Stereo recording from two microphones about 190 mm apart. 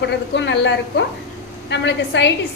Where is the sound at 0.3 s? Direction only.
70° left (ahead or behind).